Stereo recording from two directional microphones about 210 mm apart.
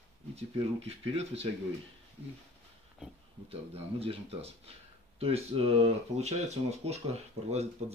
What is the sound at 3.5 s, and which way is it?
Speech, 30° right (ahead or behind).